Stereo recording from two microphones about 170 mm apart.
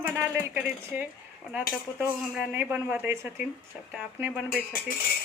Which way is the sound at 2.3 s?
10° right (ahead or behind).